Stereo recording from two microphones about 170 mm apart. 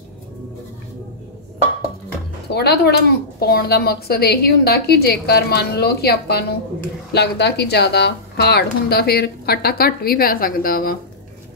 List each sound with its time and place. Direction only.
2.5 s a woman's voice: 75° left (ahead or behind)